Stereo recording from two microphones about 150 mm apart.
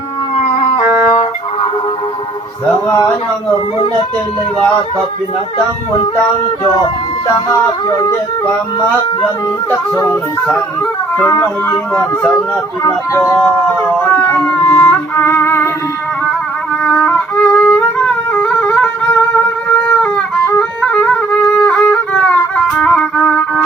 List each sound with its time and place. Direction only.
0.3 s howl: 45° left (ahead or behind)
7.5 s speech: 20° left (ahead or behind)
11.2 s speech: 15° left (ahead or behind)
14.6 s music: 20° left (ahead or behind)
16.8 s music: 5° left (ahead or behind)